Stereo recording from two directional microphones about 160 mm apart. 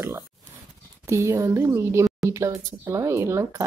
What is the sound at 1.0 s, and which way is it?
Speech, 20° right (ahead or behind).